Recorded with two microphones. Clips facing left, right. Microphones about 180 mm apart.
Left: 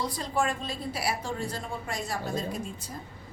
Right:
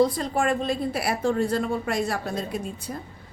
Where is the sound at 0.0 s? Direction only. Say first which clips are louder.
Right 7 dB; 55° right (ahead or behind).